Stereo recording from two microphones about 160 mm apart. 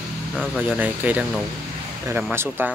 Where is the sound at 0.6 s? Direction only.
10° right (ahead or behind).